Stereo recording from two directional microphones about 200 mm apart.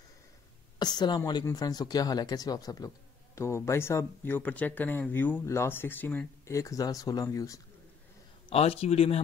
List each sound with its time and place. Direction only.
0.7 s speech: 20° left (ahead or behind)
8.5 s speech: 30° left (ahead or behind)